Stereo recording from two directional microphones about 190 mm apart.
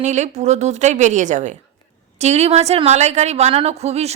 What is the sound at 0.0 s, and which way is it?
A woman's voice, 40° right (ahead or behind).